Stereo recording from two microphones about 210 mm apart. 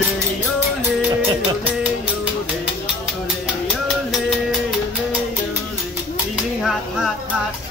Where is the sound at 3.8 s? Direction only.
Centre (ahead or behind).